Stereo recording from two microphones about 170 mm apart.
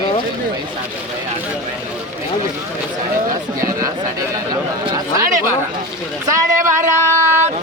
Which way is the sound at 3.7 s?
20° right (ahead or behind).